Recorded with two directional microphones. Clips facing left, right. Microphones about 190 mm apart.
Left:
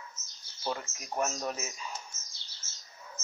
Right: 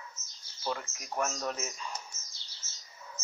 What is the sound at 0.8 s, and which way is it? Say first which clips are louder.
Speech: left 1 dB; 25° left (ahead or behind).